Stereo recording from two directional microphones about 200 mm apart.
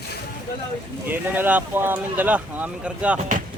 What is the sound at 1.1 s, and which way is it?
A man's voice, 10° right (ahead or behind).